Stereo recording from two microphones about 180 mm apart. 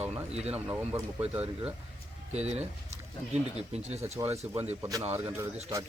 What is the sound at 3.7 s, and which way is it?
Speech, 35° right (ahead or behind).